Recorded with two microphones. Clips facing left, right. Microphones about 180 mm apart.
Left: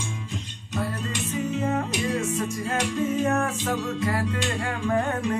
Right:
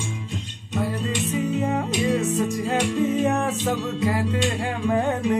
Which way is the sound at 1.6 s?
15° right (ahead or behind).